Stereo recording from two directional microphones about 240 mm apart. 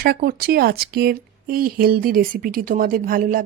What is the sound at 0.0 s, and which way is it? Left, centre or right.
Speech, right.